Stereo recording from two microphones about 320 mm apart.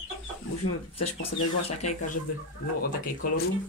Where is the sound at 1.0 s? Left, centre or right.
Left.